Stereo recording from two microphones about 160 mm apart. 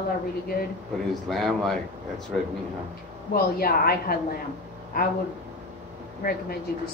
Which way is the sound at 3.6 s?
70° left (ahead or behind).